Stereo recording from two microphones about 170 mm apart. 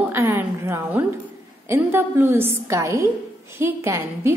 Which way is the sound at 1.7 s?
15° right (ahead or behind).